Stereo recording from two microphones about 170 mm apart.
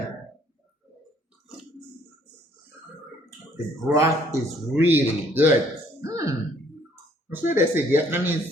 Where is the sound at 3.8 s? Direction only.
20° right (ahead or behind).